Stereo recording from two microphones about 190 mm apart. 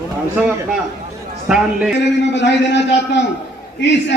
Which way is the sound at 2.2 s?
65° left (ahead or behind).